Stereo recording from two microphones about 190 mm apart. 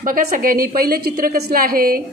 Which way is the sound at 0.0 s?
50° right (ahead or behind).